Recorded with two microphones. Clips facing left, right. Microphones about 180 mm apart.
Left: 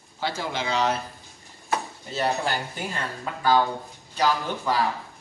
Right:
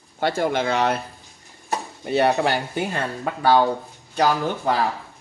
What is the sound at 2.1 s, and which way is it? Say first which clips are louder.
Speech: right 7 dB; 65° right (ahead or behind).